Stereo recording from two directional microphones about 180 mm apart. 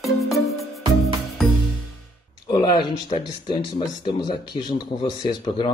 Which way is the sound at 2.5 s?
25° left (ahead or behind).